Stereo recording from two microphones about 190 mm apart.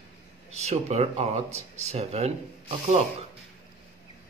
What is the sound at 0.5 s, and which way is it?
Speech, 35° right (ahead or behind).